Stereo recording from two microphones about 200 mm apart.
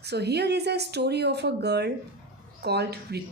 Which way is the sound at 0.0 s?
55° right (ahead or behind).